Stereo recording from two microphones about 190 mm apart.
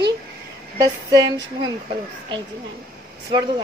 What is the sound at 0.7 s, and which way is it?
Speech, 20° right (ahead or behind).